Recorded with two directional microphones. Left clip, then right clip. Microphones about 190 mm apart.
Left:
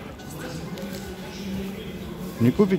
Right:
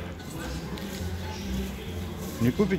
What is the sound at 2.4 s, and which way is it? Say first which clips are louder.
Speech: left 5 dB; 25° left (ahead or behind).